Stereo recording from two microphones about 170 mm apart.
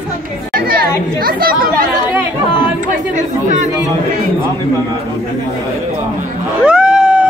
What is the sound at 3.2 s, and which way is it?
Chatter, 45° right (ahead or behind).